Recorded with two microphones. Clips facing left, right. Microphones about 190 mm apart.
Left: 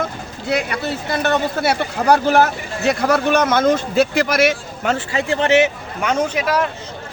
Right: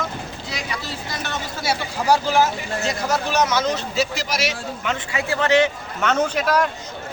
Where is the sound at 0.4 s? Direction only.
60° left (ahead or behind).